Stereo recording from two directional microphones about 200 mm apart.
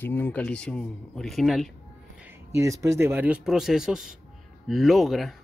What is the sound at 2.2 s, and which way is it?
Speech, 10° right (ahead or behind).